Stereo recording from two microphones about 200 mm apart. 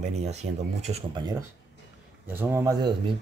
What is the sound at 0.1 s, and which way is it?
Speech, 35° right (ahead or behind).